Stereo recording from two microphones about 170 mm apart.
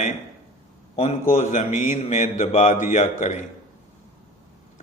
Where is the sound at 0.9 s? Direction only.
40° left (ahead or behind).